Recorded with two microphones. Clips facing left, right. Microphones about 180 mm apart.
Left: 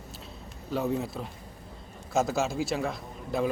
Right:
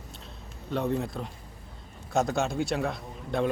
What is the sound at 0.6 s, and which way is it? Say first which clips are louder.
A man's voice: even; 5° left (ahead or behind).